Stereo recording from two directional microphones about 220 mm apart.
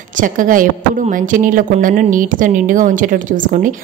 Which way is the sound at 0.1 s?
35° right (ahead or behind).